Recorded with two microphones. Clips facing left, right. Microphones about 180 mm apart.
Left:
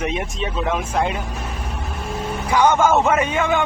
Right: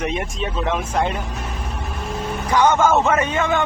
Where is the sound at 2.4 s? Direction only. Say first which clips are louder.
Even; 10° left (ahead or behind).